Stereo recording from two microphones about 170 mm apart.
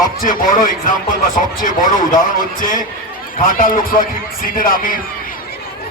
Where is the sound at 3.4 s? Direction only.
55° left (ahead or behind).